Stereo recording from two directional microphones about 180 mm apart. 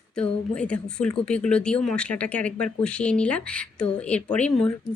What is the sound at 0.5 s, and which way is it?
Speech, 5° left (ahead or behind).